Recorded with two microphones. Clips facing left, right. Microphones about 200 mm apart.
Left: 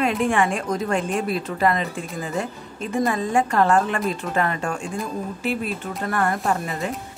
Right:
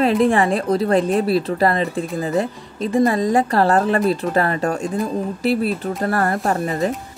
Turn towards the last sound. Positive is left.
turn(degrees=-40)  # may be behind; listen again after turning